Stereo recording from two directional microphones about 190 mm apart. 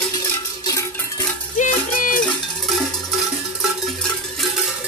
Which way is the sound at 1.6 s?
45° left (ahead or behind).